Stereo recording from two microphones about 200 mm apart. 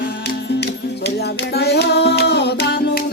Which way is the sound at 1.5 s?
55° left (ahead or behind).